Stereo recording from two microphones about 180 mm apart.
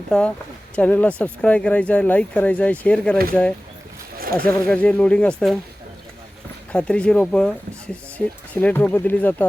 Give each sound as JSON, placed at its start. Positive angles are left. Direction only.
{"t": 0.1, "sound": "speech", "side_deg": 5}
{"t": 4.2, "sound": "a sound", "side_deg": -55}
{"t": 4.4, "sound": "speech", "side_deg": 10}
{"t": 6.7, "sound": "speech", "side_deg": 5}
{"t": 8.5, "sound": "speech", "side_deg": 10}